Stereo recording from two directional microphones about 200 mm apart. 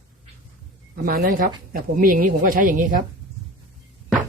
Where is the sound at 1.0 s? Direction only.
45° right (ahead or behind).